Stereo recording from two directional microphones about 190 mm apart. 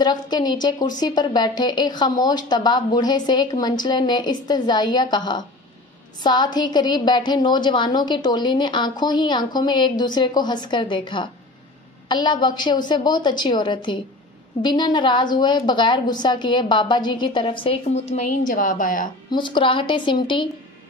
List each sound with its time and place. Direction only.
0.0 s a woman's voice: 20° left (ahead or behind); by 19.0 s 45° left (ahead or behind)
19.3 s a woman's voice: 25° left (ahead or behind)